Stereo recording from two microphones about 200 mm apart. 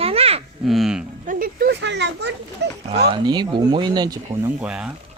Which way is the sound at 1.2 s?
45° right (ahead or behind).